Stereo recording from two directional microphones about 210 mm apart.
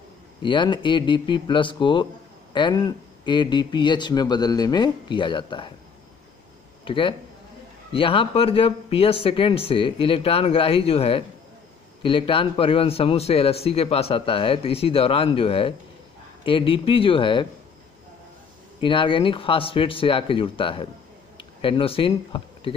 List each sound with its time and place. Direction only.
0.4 s a man's voice: 20° left (ahead or behind)
6.8 s a man's voice: 25° left (ahead or behind)
18.8 s a man's voice: 25° left (ahead or behind)